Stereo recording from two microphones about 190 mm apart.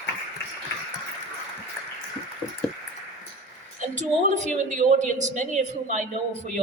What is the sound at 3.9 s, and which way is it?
A man's voice, 40° right (ahead or behind).